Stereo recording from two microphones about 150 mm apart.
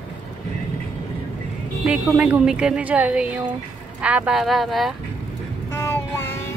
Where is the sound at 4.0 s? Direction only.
10° right (ahead or behind).